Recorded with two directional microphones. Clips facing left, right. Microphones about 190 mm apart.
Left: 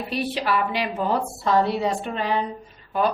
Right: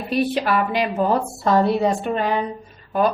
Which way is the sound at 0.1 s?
50° right (ahead or behind).